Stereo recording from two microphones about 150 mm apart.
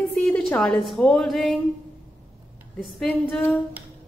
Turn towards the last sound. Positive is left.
turn(degrees=0)  # may be behind; listen again after turning